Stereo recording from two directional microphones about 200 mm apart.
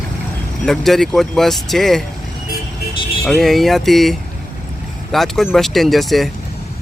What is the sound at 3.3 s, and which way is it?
Speech, centre (ahead or behind).